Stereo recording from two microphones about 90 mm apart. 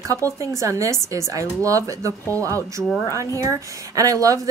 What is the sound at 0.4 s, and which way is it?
A woman's voice, 35° right (ahead or behind).